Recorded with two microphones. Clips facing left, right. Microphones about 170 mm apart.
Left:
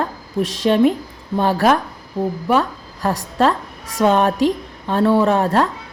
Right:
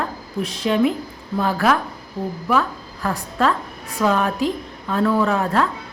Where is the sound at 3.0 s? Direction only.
30° left (ahead or behind).